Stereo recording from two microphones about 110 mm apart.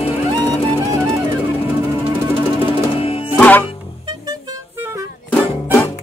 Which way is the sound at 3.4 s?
15° left (ahead or behind).